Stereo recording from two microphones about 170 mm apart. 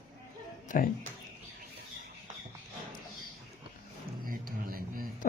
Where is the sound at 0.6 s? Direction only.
55° left (ahead or behind).